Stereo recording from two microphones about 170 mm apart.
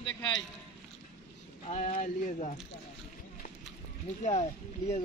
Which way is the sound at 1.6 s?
45° left (ahead or behind).